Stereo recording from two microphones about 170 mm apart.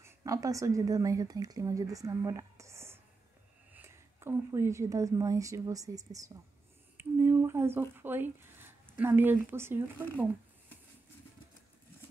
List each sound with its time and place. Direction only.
0.0 s speech: 20° right (ahead or behind)
7.0 s a sound: 15° right (ahead or behind)
7.9 s speech: 10° right (ahead or behind)